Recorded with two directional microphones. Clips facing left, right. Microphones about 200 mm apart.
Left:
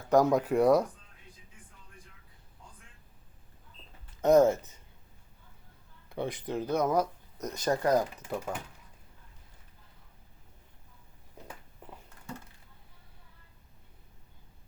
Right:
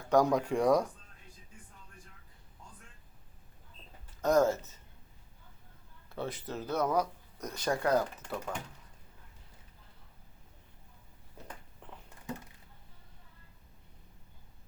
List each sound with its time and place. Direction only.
0.1 s speech: 10° left (ahead or behind)
4.2 s speech: 20° left (ahead or behind)
6.1 s speech: 15° left (ahead or behind)